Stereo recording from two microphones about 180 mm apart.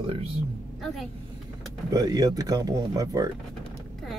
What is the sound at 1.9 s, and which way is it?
Speech, 20° right (ahead or behind).